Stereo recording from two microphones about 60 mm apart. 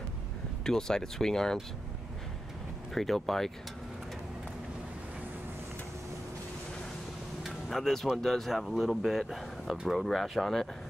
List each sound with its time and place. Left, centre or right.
0.7 s speech: centre
2.9 s speech: centre
7.4 s a sound: centre
8.2 s speech: centre